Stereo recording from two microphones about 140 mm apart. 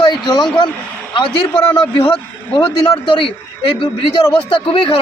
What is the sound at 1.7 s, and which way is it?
A man's voice, 40° left (ahead or behind).